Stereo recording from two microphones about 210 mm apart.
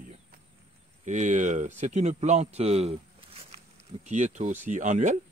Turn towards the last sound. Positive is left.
turn(degrees=-35)  # may be behind; listen again after turning